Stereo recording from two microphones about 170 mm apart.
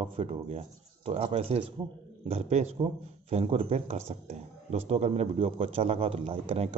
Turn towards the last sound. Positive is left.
turn(degrees=-35)  # may be behind; listen again after turning